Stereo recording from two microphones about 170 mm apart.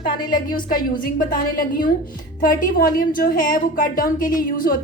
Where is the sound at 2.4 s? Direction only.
55° left (ahead or behind).